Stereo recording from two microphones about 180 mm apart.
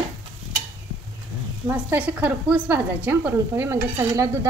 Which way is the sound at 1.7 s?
10° right (ahead or behind).